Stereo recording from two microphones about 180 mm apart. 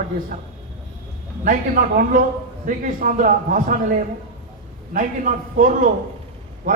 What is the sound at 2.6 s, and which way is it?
A man's voice, 50° right (ahead or behind).